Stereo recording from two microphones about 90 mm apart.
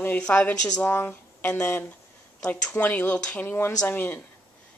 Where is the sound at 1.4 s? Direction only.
30° left (ahead or behind).